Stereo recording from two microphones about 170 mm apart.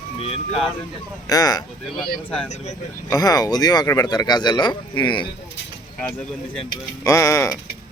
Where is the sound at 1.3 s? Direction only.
20° left (ahead or behind).